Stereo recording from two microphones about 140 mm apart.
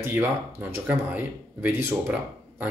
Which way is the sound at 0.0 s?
15° right (ahead or behind).